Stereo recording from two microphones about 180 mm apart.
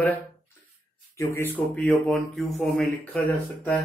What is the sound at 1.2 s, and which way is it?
Speech, 15° left (ahead or behind).